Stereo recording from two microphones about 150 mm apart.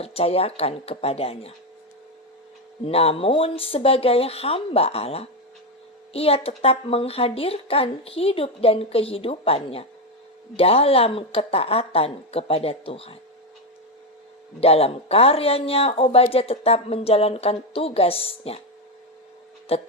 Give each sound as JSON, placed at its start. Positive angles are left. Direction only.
{"t": 0.0, "sound": "speech", "side_deg": 40}
{"t": 2.8, "sound": "speech", "side_deg": 40}
{"t": 14.6, "sound": "speech", "side_deg": 40}
{"t": 19.6, "sound": "speech", "side_deg": 40}